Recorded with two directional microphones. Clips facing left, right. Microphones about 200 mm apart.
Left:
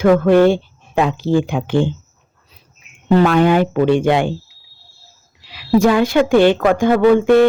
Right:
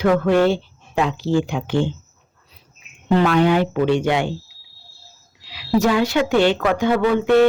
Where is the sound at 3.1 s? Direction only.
45° left (ahead or behind).